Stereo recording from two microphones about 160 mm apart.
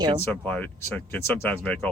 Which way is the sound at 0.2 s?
10° left (ahead or behind).